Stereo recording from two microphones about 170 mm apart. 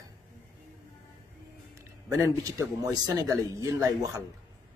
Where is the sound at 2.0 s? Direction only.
20° right (ahead or behind).